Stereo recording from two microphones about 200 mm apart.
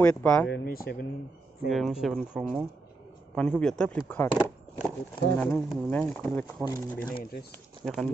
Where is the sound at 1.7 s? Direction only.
Centre (ahead or behind).